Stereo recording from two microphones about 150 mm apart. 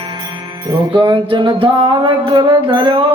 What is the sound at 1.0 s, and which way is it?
Music, 30° right (ahead or behind).